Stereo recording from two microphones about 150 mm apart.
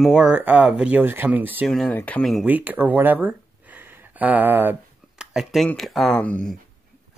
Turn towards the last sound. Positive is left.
turn(degrees=5)  # may be behind; listen again after turning